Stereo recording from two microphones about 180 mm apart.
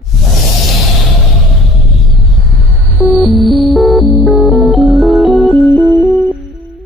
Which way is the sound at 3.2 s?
Centre (ahead or behind).